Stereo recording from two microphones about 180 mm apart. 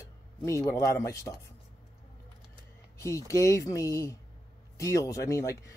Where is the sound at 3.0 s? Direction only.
15° left (ahead or behind).